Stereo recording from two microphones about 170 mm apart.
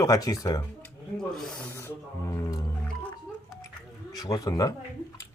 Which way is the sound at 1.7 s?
15° left (ahead or behind).